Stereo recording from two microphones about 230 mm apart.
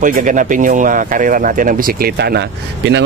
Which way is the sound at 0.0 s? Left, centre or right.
Right.